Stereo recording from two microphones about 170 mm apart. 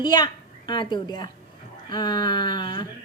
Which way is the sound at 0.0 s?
25° left (ahead or behind).